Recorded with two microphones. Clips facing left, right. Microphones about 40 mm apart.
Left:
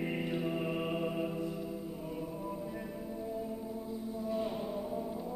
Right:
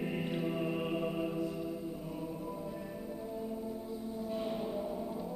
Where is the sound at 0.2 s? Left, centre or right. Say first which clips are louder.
Even; centre.